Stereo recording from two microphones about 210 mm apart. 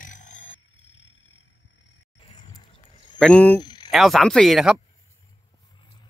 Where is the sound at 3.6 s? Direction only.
20° left (ahead or behind).